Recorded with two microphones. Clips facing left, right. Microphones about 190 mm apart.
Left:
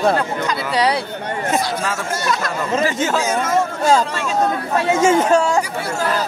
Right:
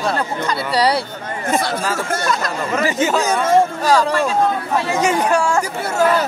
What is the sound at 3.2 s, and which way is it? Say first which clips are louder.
Speech: right 3 dB; 30° right (ahead or behind).